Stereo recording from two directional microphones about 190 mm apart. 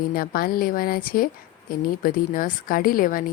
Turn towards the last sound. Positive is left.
turn(degrees=50)  # may be behind; listen again after turning